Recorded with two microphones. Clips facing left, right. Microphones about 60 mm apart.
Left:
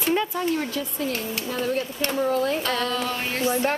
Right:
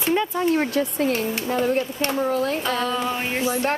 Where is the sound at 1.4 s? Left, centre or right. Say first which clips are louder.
Right 3 dB; right.